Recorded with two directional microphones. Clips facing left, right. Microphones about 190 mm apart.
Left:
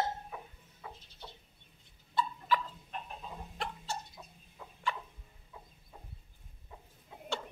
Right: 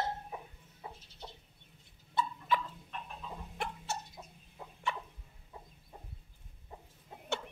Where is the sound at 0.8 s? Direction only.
30° right (ahead or behind).